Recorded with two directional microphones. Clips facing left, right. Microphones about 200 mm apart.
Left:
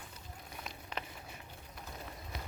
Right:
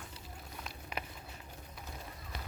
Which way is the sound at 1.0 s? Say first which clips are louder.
Right 1 dB; 10° right (ahead or behind).